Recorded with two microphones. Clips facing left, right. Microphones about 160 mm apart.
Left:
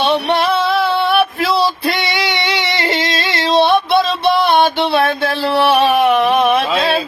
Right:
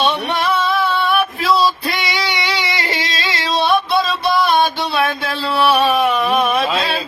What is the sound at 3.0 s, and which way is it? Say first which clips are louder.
Yodeling: left 4 dB; 55° left (ahead or behind).